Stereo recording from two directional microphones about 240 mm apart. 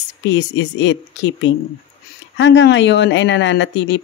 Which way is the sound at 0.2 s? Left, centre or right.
Left.